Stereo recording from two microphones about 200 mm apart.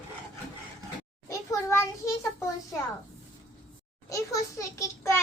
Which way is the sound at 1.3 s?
15° left (ahead or behind).